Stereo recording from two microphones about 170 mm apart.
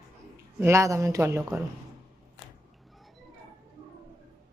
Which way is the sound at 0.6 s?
15° right (ahead or behind).